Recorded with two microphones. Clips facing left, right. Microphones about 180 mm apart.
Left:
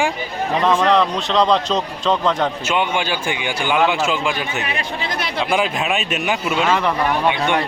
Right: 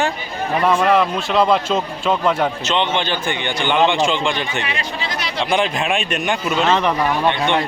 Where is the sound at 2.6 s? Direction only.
10° left (ahead or behind).